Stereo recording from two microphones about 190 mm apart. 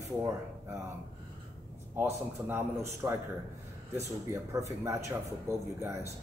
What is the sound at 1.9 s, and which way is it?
Speech, 15° right (ahead or behind).